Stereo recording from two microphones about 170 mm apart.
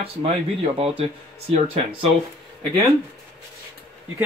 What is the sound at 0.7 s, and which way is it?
Speech, 35° right (ahead or behind).